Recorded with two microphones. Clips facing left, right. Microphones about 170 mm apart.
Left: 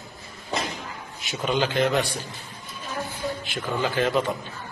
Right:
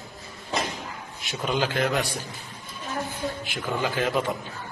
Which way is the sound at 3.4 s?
10° right (ahead or behind).